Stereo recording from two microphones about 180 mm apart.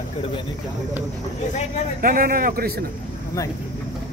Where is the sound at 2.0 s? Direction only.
50° right (ahead or behind).